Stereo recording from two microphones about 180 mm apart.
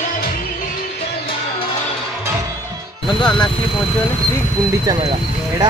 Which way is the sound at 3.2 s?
5° left (ahead or behind).